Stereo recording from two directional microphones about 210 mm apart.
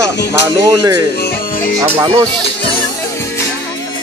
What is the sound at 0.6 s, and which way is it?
Speech, 15° right (ahead or behind).